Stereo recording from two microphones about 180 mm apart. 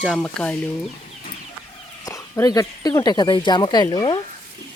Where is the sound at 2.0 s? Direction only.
20° left (ahead or behind).